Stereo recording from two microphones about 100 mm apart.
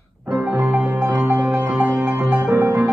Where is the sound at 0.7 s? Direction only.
20° right (ahead or behind).